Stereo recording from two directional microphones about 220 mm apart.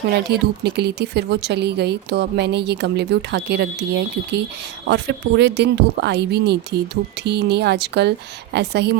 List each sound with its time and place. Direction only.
0.3 s speech: 50° right (ahead or behind)